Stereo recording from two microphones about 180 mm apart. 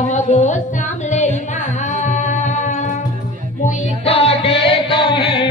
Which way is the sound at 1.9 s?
40° left (ahead or behind).